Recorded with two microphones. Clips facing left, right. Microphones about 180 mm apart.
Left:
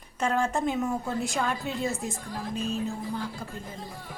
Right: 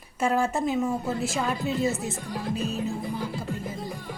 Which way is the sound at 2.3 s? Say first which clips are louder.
Right 7 dB; 70° right (ahead or behind).